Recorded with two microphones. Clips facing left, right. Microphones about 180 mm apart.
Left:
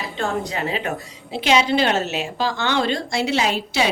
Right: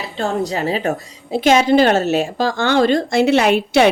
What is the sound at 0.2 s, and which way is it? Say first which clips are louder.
A woman's voice: right 5 dB; 35° right (ahead or behind).